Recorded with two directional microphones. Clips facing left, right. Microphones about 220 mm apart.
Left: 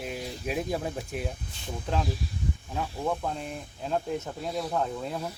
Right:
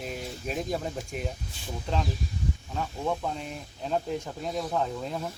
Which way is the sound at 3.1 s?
5° left (ahead or behind).